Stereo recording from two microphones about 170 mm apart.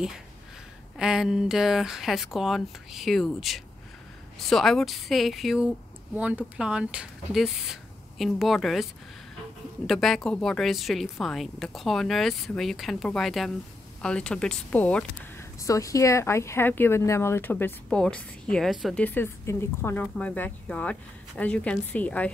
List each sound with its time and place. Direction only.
0.9 s a woman's voice: 5° right (ahead or behind)
9.8 s a woman's voice: centre (ahead or behind)
15.6 s a woman's voice: 20° left (ahead or behind); by 19.0 s centre (ahead or behind)
19.0 s speech: 15° left (ahead or behind)